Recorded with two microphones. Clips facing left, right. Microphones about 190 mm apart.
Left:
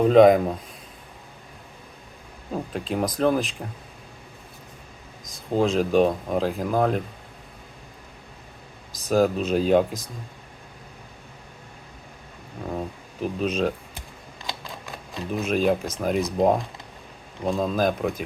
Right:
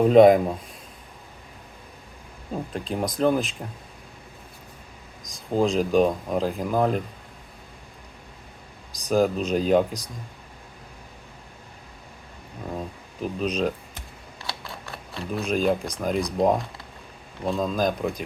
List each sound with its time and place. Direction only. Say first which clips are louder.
0.0 s speech: even; 5° right (ahead or behind)
2.7 s speech: left 2 dB; centre (ahead or behind)
5.2 s speech: even; centre (ahead or behind)
8.9 s speech: left 1 dB; centre (ahead or behind)
13.2 s speech: left 1 dB; 5° left (ahead or behind)
14.4 s a sound: left 1 dB; 20° left (ahead or behind)
15.3 s speech: left 1 dB; 5° left (ahead or behind)